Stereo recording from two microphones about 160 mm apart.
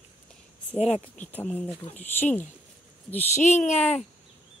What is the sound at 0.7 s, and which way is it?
Speech, 40° left (ahead or behind).